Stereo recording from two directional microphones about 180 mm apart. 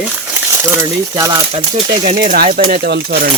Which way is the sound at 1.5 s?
30° right (ahead or behind).